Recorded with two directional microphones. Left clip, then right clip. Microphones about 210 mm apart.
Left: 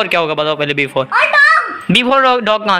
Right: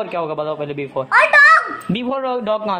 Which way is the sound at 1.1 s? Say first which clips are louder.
Even; 25° right (ahead or behind).